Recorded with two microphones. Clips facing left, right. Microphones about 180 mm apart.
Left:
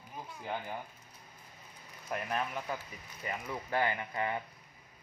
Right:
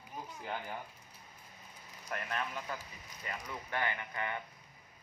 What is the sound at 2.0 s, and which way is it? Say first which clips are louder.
Speech: left 4 dB; 25° left (ahead or behind).